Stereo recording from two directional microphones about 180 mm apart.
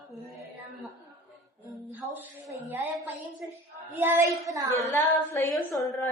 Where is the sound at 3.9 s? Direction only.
15° right (ahead or behind).